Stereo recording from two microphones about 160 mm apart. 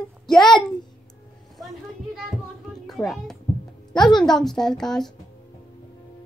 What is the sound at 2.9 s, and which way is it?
A child's voice, centre (ahead or behind).